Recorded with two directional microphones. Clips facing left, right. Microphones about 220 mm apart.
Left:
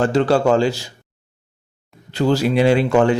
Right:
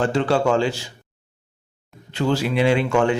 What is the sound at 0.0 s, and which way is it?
Speech, 40° left (ahead or behind).